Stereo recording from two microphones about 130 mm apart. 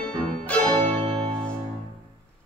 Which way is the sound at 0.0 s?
10° left (ahead or behind).